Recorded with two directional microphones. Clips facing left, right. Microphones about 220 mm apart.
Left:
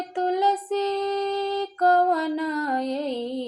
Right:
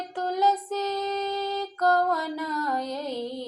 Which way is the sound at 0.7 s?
15° left (ahead or behind).